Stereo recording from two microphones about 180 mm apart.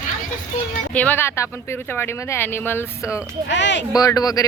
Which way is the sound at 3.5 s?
90° left.